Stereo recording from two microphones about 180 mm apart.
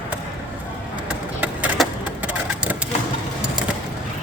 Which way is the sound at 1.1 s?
5° right (ahead or behind).